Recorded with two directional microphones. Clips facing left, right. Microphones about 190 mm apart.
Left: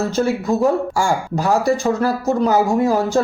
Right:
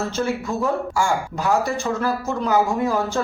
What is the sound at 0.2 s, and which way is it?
Speech, 35° left (ahead or behind).